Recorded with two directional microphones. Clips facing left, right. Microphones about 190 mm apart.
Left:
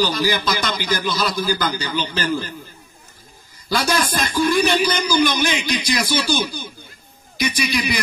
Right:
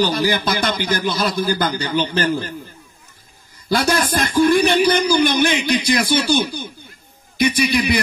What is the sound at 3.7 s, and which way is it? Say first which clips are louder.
A man's voice: right 3 dB; 55° right (ahead or behind).